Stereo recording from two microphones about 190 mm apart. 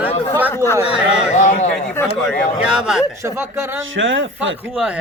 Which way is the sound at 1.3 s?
40° left (ahead or behind).